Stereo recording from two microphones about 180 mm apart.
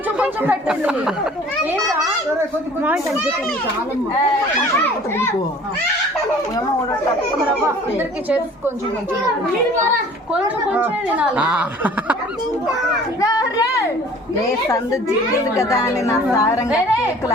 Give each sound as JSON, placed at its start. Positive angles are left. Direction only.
{"t": 0.2, "sound": "speech", "side_deg": -5}
{"t": 4.8, "sound": "a woman's voice", "side_deg": 15}
{"t": 7.6, "sound": "speech", "side_deg": -10}
{"t": 10.3, "sound": "speech", "side_deg": -5}
{"t": 13.2, "sound": "a child's voice", "side_deg": 20}
{"t": 15.5, "sound": "a woman's voice", "side_deg": 20}